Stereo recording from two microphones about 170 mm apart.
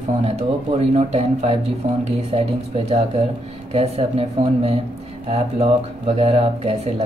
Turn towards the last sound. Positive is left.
turn(degrees=-35)  # may be behind; listen again after turning